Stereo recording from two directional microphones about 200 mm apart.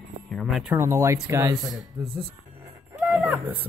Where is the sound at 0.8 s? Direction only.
15° right (ahead or behind).